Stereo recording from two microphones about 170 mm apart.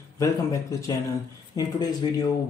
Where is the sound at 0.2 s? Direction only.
20° left (ahead or behind).